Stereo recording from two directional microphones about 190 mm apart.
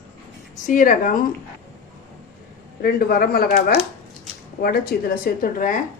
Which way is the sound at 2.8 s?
55° left (ahead or behind).